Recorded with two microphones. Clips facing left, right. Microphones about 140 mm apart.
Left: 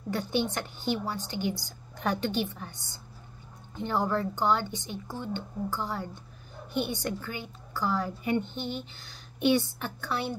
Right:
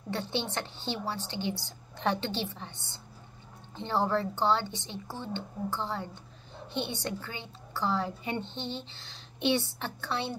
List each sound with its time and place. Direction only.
0.1 s a woman's voice: 25° right (ahead or behind)
3.7 s a woman's voice: 30° right (ahead or behind)